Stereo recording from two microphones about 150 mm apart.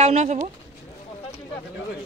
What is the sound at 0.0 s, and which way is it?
Speech, 50° right (ahead or behind).